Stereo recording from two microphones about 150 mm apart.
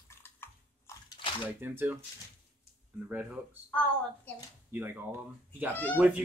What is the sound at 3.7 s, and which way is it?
Speech, 10° left (ahead or behind).